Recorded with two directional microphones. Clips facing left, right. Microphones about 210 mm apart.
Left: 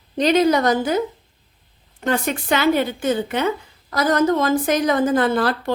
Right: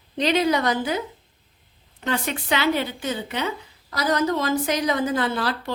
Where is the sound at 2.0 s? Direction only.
45° left (ahead or behind).